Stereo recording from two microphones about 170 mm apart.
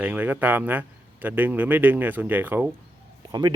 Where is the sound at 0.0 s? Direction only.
10° right (ahead or behind).